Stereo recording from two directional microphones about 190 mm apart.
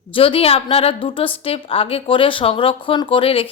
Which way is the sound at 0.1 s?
30° left (ahead or behind).